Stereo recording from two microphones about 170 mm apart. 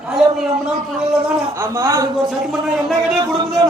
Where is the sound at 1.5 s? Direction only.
15° right (ahead or behind).